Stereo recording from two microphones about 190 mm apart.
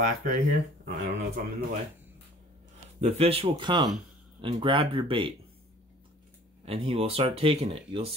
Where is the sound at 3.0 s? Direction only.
30° right (ahead or behind).